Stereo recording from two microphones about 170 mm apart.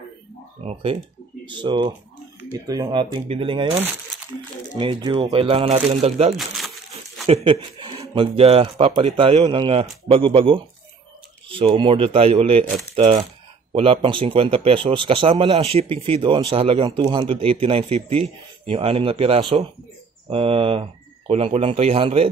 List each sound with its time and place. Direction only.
0.6 s typing: 35° right (ahead or behind)
1.5 s speech: 30° right (ahead or behind)
6.3 s crumpling: centre (ahead or behind)
7.2 s speech: 35° right (ahead or behind)